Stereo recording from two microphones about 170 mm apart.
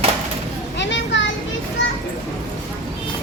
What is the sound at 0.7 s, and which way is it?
Children playing, 90° left.